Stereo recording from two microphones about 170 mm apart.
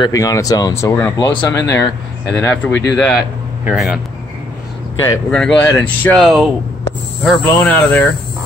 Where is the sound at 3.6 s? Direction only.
5° right (ahead or behind).